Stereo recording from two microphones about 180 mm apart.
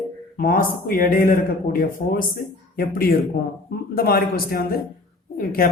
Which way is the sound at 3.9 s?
55° left (ahead or behind).